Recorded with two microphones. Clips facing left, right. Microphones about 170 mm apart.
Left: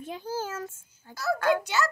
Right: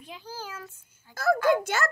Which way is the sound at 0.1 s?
45° left (ahead or behind).